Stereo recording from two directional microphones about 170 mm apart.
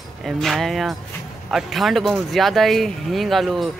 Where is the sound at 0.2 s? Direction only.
Centre (ahead or behind).